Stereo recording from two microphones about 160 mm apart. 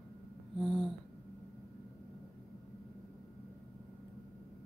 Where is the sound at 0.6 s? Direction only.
5° left (ahead or behind).